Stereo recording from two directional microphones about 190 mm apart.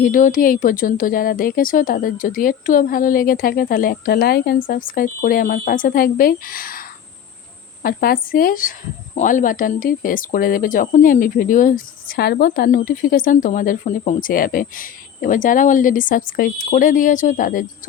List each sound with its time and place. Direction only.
0.0 s speech: 45° left (ahead or behind)